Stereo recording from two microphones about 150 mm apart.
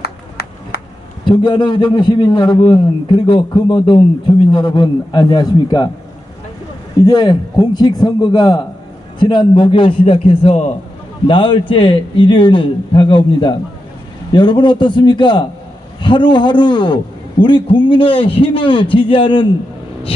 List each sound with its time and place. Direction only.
0.0 s clapping: 90° left
1.2 s a man's voice: 30° left (ahead or behind)
7.0 s a man's voice: 25° left (ahead or behind)